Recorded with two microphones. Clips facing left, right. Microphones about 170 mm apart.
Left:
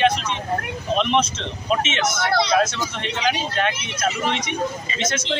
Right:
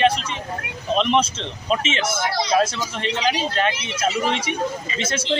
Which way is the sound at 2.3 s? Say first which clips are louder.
Left 3 dB; 65° left (ahead or behind).